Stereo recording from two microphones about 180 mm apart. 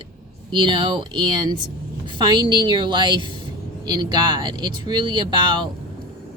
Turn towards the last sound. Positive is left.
turn(degrees=-25)  # may be behind; listen again after turning